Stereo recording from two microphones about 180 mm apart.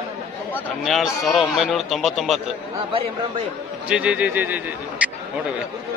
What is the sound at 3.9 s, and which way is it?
A man's voice, 5° right (ahead or behind).